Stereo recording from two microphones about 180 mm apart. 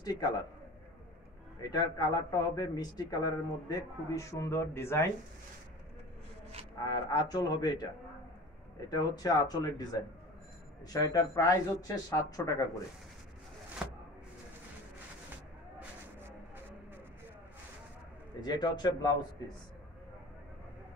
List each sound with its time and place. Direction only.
0.0 s a man's voice: 20° left (ahead or behind)
1.6 s speech: 20° left (ahead or behind)
7.1 s speech: 20° left (ahead or behind)
10.9 s speech: 20° left (ahead or behind)
13.8 s a sound: 5° right (ahead or behind)
18.4 s speech: 25° left (ahead or behind)